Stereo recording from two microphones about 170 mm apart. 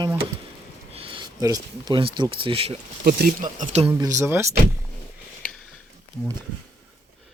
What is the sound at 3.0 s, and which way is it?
Speech, 60° right (ahead or behind).